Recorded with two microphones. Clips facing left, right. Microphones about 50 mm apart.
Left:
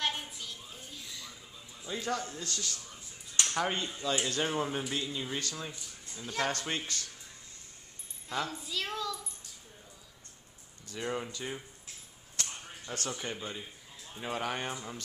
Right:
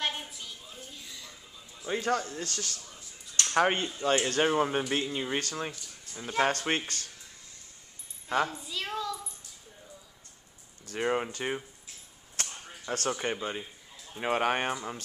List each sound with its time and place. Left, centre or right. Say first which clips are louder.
1.9 s speech: right 5 dB; right
6.1 s speech: right 6 dB; right
8.5 s a sound: right 1 dB; centre
10.9 s speech: right 6 dB; right
12.4 s a sound: right 1 dB; right
13.1 s speech: right 6 dB; right
14.2 s speech: right 7 dB; right